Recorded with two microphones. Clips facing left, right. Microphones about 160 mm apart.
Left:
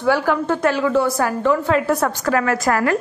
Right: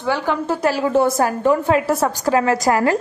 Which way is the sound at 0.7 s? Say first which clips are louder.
Even; 35° right (ahead or behind).